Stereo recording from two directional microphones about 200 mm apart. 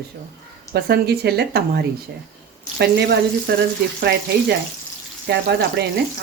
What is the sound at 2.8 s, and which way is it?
Frying, 55° right (ahead or behind).